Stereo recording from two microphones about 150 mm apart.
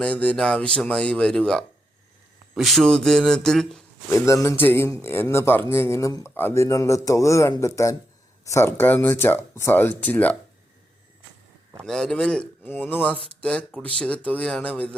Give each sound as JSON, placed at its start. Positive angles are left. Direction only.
{"t": 0.0, "sound": "speech", "side_deg": 10}
{"t": 4.1, "sound": "speech", "side_deg": 20}
{"t": 11.9, "sound": "speech", "side_deg": 5}